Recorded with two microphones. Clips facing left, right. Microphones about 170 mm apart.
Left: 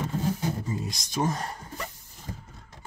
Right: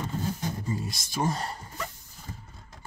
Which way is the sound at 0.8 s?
20° left (ahead or behind).